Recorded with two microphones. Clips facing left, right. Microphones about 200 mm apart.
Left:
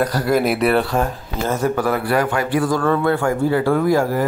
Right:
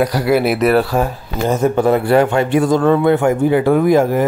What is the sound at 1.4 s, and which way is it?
Speech, 20° right (ahead or behind).